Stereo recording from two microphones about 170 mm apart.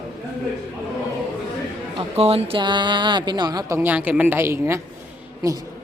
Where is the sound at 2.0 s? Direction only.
35° right (ahead or behind); by 4.8 s 15° right (ahead or behind).